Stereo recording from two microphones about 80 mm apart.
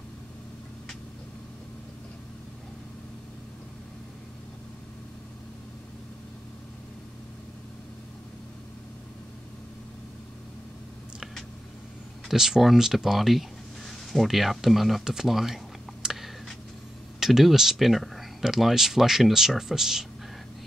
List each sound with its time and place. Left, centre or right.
12.3 s speech: centre